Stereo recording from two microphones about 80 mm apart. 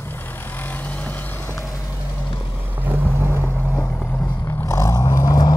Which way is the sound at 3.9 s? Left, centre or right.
Left.